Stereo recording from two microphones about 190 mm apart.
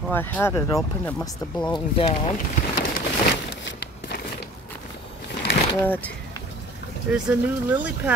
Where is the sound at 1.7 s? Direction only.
30° left (ahead or behind).